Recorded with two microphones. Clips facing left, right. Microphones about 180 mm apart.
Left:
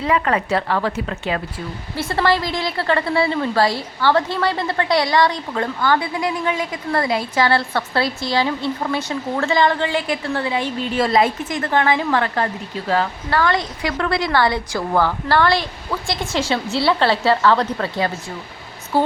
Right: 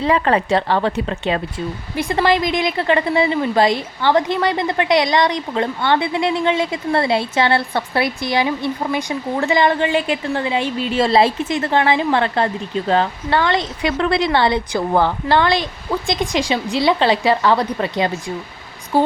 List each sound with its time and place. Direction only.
0.0 s speech: 30° right (ahead or behind); by 19.1 s 15° right (ahead or behind)